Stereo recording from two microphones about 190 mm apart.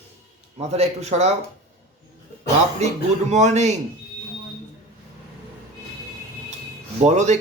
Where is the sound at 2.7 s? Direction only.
35° right (ahead or behind).